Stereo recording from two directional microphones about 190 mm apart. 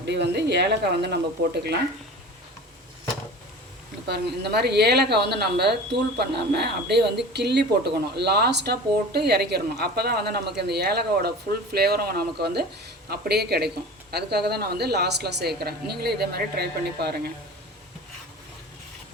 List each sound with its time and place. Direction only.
0.0 s speech: 60° right (ahead or behind)
4.1 s speech: 60° right (ahead or behind)